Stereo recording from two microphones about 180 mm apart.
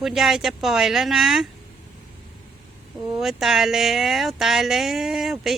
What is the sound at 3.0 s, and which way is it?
A man's voice, centre (ahead or behind).